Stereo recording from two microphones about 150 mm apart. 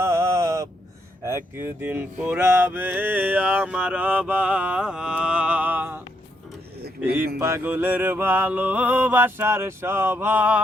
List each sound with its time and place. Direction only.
0.0 s a sound: 20° right (ahead or behind)
1.2 s mantra: 15° right (ahead or behind)
7.3 s mantra: 15° right (ahead or behind)